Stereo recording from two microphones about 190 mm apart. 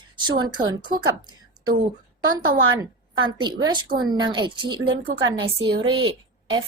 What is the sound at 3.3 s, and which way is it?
Speech, 25° right (ahead or behind).